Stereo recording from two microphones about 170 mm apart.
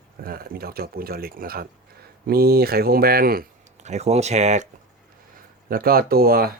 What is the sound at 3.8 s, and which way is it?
Speech, 40° right (ahead or behind).